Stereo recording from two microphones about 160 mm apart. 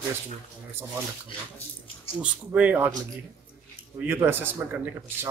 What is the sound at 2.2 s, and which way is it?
Speech, 10° right (ahead or behind).